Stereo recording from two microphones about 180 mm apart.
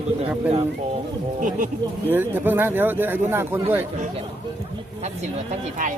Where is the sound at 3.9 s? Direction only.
40° right (ahead or behind).